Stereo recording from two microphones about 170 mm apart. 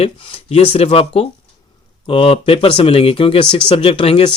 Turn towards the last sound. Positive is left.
turn(degrees=30)  # may be behind; listen again after turning